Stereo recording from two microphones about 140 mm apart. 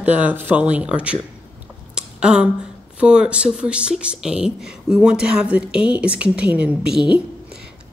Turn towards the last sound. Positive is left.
turn(degrees=-5)  # may be behind; listen again after turning